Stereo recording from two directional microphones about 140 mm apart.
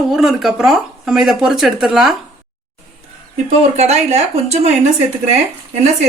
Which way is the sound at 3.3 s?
50° right (ahead or behind).